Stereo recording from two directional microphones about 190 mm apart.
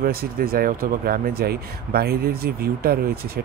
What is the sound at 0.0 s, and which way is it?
Speech, 55° right (ahead or behind).